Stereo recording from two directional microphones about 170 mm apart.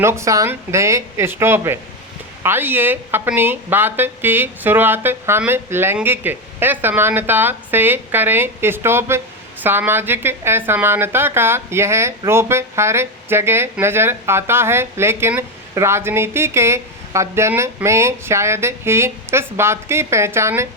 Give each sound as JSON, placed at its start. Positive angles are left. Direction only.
{"t": 0.0, "sound": "speech", "side_deg": -15}